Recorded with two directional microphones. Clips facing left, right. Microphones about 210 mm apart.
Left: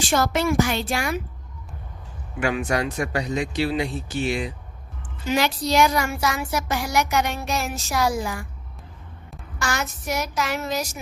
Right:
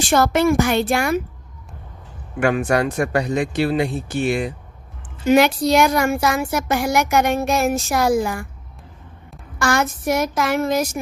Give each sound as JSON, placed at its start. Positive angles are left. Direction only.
{"t": 0.0, "sound": "a woman's voice", "side_deg": -55}
{"t": 2.4, "sound": "speech", "side_deg": -55}
{"t": 9.6, "sound": "speech", "side_deg": -55}